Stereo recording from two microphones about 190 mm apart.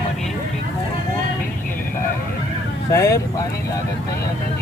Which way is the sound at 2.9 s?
15° left (ahead or behind).